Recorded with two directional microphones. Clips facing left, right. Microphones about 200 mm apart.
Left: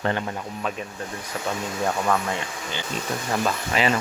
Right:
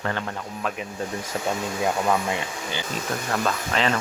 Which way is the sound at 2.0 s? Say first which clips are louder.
Right 1 dB; 15° right (ahead or behind).